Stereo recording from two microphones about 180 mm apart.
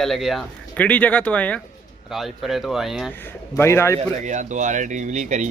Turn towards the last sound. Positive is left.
turn(degrees=-40)  # may be behind; listen again after turning